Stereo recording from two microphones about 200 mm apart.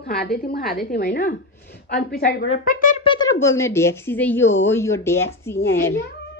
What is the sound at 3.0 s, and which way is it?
A woman's voice, 20° left (ahead or behind).